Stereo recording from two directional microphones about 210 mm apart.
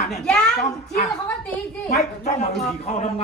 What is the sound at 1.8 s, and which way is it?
Speech, 35° left (ahead or behind).